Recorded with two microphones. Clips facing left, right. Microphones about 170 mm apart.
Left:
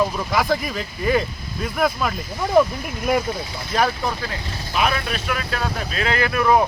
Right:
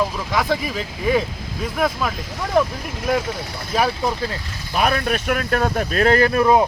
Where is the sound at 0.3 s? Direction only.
Centre (ahead or behind).